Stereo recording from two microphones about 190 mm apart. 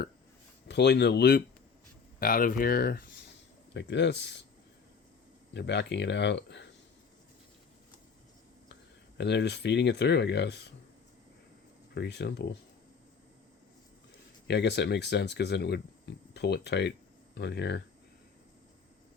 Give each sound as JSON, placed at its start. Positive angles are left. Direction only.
{"t": 0.7, "sound": "speech", "side_deg": 65}
{"t": 2.1, "sound": "speech", "side_deg": 50}
{"t": 3.8, "sound": "speech", "side_deg": 65}
{"t": 5.5, "sound": "speech", "side_deg": 65}
{"t": 8.7, "sound": "speech", "side_deg": 65}
{"t": 11.9, "sound": "speech", "side_deg": 60}
{"t": 14.4, "sound": "speech", "side_deg": 60}